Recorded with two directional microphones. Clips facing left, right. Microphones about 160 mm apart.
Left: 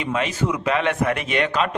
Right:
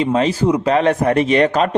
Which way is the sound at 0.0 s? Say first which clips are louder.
Right 8 dB; 35° right (ahead or behind).